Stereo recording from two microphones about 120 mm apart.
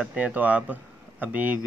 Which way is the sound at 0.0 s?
10° right (ahead or behind).